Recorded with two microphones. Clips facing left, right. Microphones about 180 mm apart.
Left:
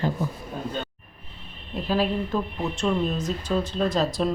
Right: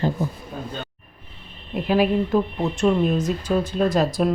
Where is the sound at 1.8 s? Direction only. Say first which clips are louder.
Right 5 dB; 15° right (ahead or behind).